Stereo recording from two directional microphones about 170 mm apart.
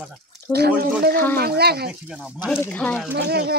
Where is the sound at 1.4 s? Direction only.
70° right (ahead or behind).